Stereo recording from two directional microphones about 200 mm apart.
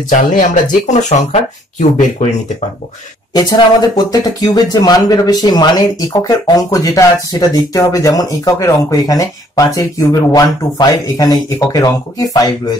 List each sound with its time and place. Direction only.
0.1 s speech: 40° left (ahead or behind)
3.3 s speech: 20° left (ahead or behind)